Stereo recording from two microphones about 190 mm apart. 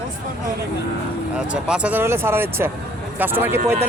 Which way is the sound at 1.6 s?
5° right (ahead or behind).